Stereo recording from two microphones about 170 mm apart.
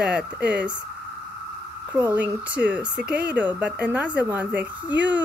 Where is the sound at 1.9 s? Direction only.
10° right (ahead or behind).